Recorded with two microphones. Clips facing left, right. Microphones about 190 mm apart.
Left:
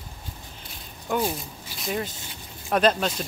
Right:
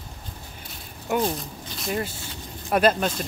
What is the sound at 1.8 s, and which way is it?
Speech, 5° right (ahead or behind).